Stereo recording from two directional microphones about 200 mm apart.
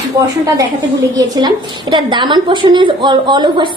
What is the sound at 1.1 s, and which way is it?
A woman's voice, 20° right (ahead or behind).